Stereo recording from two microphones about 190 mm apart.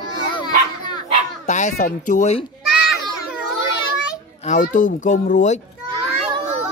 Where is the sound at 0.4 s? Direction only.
25° left (ahead or behind).